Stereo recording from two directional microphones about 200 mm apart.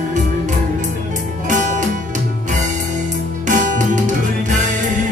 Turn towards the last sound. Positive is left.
turn(degrees=-40)  # may be behind; listen again after turning